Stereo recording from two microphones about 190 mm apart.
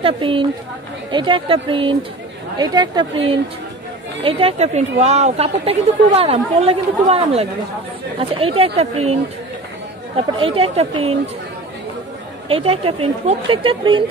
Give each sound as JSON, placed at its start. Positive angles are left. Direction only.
{"t": 0.0, "sound": "a woman's voice", "side_deg": -30}
{"t": 12.4, "sound": "speech", "side_deg": -30}